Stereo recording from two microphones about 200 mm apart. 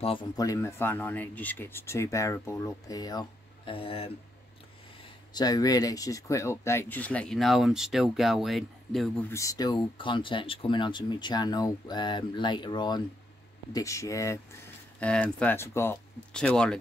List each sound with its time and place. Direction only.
0.0 s speech: 25° left (ahead or behind)
5.3 s speech: 20° left (ahead or behind); by 9.1 s centre (ahead or behind)
9.3 s speech: 15° left (ahead or behind)